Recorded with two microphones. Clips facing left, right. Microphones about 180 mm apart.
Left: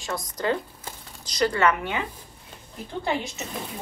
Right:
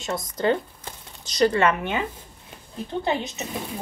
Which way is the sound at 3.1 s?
20° right (ahead or behind).